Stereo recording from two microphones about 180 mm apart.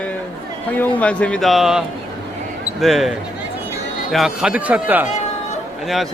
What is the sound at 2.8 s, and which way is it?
A man's voice, centre (ahead or behind).